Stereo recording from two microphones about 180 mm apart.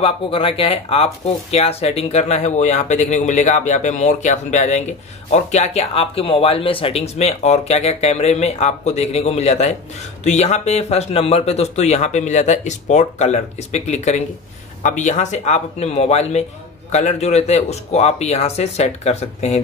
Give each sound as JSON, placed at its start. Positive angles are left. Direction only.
{"t": 0.0, "sound": "speech", "side_deg": 30}